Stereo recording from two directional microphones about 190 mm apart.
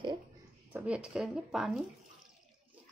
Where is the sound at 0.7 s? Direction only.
5° right (ahead or behind).